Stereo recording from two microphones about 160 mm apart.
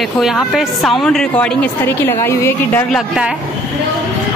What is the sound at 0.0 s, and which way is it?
Speech, centre (ahead or behind).